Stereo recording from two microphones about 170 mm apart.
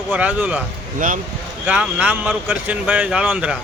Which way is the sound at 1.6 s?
10° right (ahead or behind).